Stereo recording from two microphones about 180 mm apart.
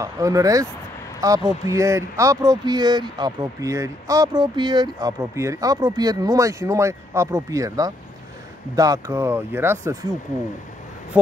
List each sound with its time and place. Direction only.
0.0 s speech: 20° right (ahead or behind)